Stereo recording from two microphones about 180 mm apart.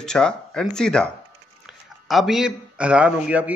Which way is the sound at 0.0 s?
5° left (ahead or behind).